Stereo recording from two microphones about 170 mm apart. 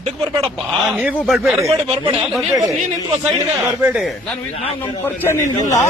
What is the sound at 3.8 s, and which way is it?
Speech, 5° right (ahead or behind).